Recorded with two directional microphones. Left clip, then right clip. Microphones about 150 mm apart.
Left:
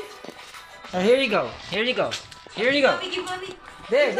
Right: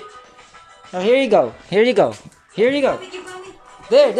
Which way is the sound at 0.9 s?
10° right (ahead or behind).